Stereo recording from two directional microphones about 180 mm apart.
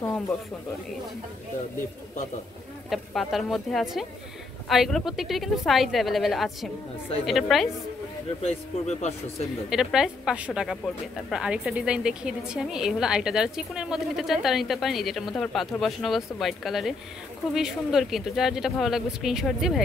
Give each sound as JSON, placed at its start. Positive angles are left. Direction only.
{"t": 2.9, "sound": "a woman's voice", "side_deg": 0}
{"t": 8.4, "sound": "speech", "side_deg": 35}
{"t": 9.7, "sound": "a woman's voice", "side_deg": 0}